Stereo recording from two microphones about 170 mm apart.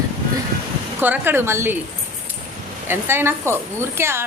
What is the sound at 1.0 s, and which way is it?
Speech, 10° right (ahead or behind).